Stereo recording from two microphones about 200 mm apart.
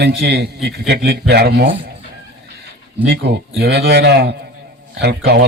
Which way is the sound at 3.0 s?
55° right (ahead or behind).